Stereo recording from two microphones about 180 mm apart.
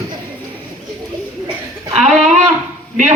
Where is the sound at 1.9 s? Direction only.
40° right (ahead or behind).